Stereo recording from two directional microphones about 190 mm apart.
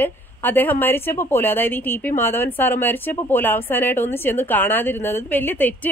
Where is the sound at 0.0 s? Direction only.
10° left (ahead or behind).